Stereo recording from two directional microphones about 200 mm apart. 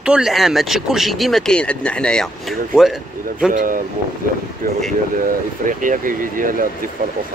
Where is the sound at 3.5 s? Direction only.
45° right (ahead or behind).